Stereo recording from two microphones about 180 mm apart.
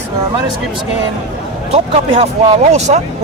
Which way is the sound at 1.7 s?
35° right (ahead or behind).